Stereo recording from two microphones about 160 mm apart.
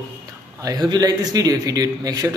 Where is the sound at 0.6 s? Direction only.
25° right (ahead or behind).